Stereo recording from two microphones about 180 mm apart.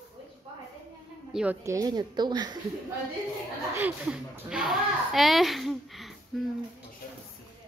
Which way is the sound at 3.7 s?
10° right (ahead or behind).